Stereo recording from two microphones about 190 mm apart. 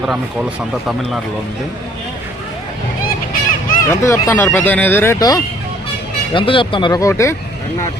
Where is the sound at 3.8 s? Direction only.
15° left (ahead or behind).